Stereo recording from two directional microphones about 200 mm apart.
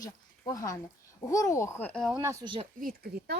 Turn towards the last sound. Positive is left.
turn(degrees=-45)  # may be behind; listen again after turning